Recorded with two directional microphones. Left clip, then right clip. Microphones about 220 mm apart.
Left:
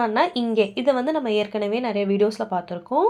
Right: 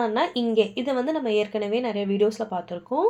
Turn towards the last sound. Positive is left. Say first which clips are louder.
# left 3 dB
turn(degrees=30)  # may be behind; listen again after turning